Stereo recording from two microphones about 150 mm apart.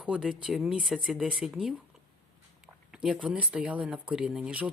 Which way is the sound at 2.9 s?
5° right (ahead or behind).